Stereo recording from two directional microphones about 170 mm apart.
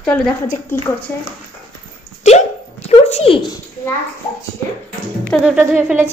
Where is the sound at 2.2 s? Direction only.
40° left (ahead or behind).